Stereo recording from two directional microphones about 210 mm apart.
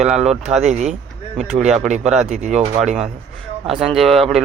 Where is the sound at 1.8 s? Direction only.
35° right (ahead or behind).